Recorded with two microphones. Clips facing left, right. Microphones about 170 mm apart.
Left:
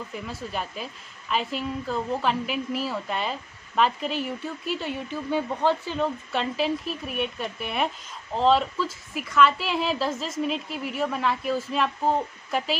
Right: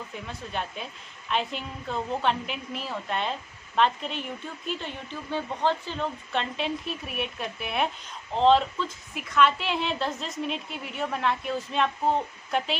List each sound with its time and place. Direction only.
0.1 s a woman's voice: 5° left (ahead or behind)